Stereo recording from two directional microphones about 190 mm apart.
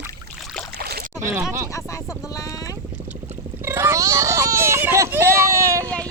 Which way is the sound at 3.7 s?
15° right (ahead or behind).